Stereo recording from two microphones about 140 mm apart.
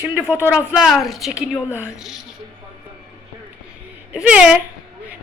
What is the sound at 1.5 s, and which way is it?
Speech, 15° left (ahead or behind).